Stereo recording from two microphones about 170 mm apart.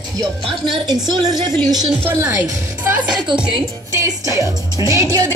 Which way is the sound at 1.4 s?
25° right (ahead or behind).